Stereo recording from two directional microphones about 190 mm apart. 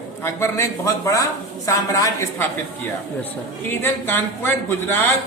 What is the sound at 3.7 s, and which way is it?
A man's voice, 10° left (ahead or behind).